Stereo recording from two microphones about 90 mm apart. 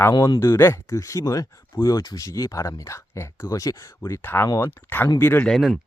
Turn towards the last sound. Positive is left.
turn(degrees=5)  # may be behind; listen again after turning